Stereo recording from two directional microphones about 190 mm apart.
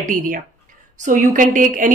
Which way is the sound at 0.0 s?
45° right (ahead or behind).